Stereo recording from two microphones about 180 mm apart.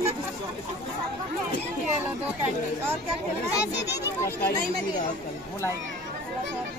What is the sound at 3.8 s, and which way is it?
Speech, 70° left (ahead or behind).